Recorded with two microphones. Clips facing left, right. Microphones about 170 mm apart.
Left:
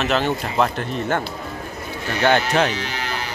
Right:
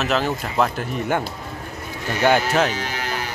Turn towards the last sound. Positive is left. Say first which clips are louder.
# even
turn(degrees=-45)  # may be behind; listen again after turning